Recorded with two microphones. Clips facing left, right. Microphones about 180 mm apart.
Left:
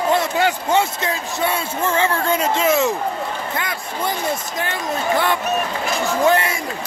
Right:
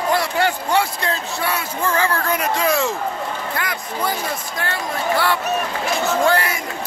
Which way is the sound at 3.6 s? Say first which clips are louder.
Even; 25° left (ahead or behind).